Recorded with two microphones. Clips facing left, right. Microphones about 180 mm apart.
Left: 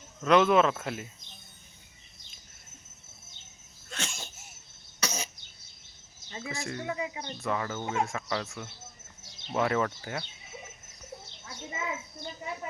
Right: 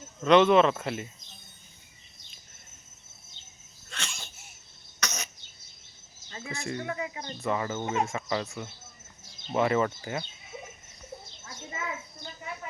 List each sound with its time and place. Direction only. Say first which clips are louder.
0.2 s cricket: right 3 dB; centre (ahead or behind)
3.9 s sneeze: left 3 dB; 45° left (ahead or behind)
4.9 s cough: left 2 dB; 30° left (ahead or behind)
6.5 s cricket: right 2 dB; centre (ahead or behind)
6.8 s speech: even; 15° left (ahead or behind)
7.4 s cricket: right 2 dB; 5° right (ahead or behind)
11.7 s a sound: left 1 dB; 20° left (ahead or behind)